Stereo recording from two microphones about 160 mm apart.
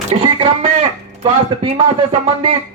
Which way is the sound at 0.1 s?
35° right (ahead or behind).